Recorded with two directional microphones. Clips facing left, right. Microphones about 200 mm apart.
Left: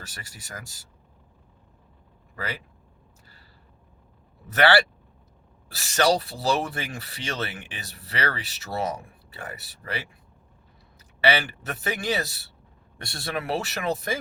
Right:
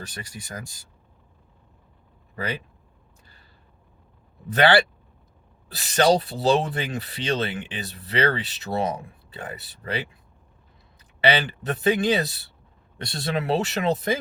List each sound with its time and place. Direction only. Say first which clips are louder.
0.0 s speech: right 7 dB; 20° right (ahead or behind)
2.3 s speech: right 4 dB; 20° right (ahead or behind)
4.5 s speech: right 2 dB; 20° right (ahead or behind)
11.2 s speech: right 2 dB; 20° right (ahead or behind)